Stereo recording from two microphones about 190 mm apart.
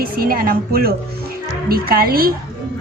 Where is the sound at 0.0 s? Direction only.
50° right (ahead or behind).